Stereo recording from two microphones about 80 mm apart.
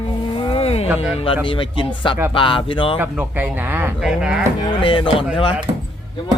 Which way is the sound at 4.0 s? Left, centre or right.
Centre.